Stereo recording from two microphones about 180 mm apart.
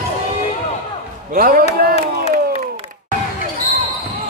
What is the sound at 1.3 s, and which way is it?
Speech, 50° right (ahead or behind).